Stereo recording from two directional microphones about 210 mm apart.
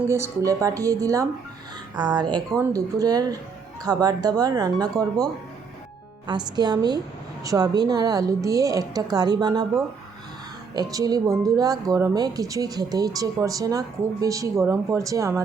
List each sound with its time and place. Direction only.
0.1 s a woman's voice: 15° right (ahead or behind)
10.8 s speech: 15° right (ahead or behind)